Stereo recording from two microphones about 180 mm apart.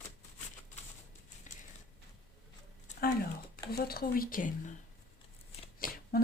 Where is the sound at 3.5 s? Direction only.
60° left (ahead or behind).